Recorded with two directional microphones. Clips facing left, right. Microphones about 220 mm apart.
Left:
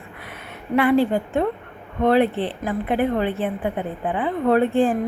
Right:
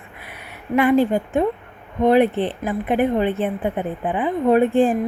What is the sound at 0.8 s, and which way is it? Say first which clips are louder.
A woman's voice: right 1 dB; 15° right (ahead or behind).